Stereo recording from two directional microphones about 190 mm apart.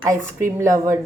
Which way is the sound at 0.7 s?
45° right (ahead or behind).